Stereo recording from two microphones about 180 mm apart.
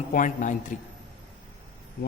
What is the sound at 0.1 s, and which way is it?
Speech, 45° left (ahead or behind).